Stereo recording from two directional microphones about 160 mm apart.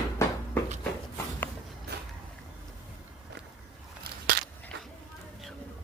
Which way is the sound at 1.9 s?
90° right.